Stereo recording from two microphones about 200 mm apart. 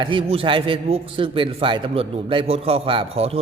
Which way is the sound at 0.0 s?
25° right (ahead or behind).